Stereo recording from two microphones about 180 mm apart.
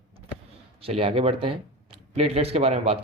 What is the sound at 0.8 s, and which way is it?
Speech, 35° right (ahead or behind).